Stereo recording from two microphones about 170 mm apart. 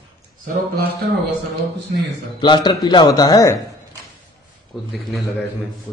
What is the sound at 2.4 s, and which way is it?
A man's voice, 25° left (ahead or behind).